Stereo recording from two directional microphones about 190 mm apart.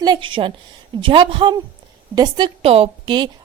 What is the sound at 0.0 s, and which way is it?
A woman's voice, 25° right (ahead or behind).